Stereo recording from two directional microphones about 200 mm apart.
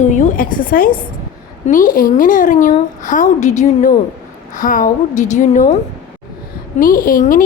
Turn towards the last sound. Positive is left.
turn(degrees=45)  # may be behind; listen again after turning